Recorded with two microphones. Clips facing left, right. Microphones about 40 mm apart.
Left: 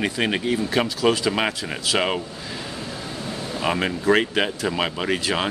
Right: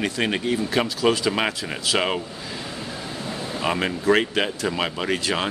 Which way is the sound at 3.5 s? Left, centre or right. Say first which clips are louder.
Left 1 dB; centre.